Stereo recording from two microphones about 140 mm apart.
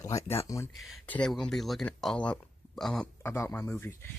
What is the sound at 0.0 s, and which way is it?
Speech, 25° left (ahead or behind).